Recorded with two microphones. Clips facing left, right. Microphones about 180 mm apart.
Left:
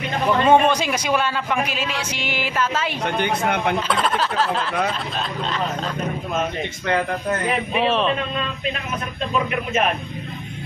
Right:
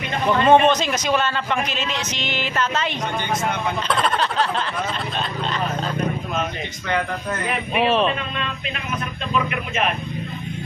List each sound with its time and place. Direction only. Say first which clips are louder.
0.5 s speech: right 2 dB; 10° left (ahead or behind)
3.2 s speech: left 4 dB; 60° left (ahead or behind)
3.9 s speech: even; centre (ahead or behind)
7.7 s speech: right 3 dB; 5° right (ahead or behind)